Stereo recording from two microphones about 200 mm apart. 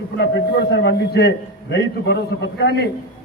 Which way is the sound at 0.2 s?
55° left (ahead or behind).